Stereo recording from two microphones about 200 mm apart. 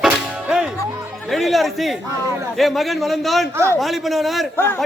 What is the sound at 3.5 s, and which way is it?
Speech, 15° right (ahead or behind).